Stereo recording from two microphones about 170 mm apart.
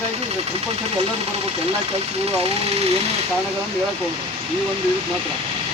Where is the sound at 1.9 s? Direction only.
35° right (ahead or behind).